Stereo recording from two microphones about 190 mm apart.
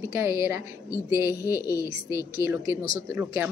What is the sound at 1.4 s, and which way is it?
Speech, 20° left (ahead or behind).